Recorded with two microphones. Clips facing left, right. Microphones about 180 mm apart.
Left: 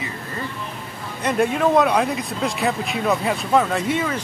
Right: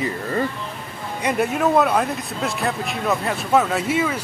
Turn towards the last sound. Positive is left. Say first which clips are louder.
# right 1 dB
turn(degrees=-5)  # may be behind; listen again after turning